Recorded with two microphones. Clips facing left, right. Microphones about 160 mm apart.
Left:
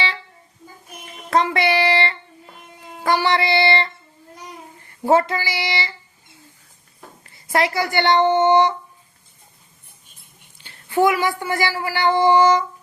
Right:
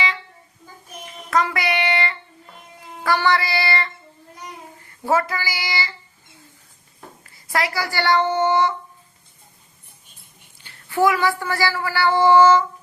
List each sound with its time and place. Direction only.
1.3 s child singing: 25° left (ahead or behind)
3.0 s speech: 20° left (ahead or behind)
5.0 s speech: 25° left (ahead or behind)
7.3 s a child's voice: 25° left (ahead or behind)
10.6 s speech: 20° left (ahead or behind)